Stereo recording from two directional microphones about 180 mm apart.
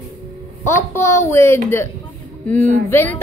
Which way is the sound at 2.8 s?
10° left (ahead or behind).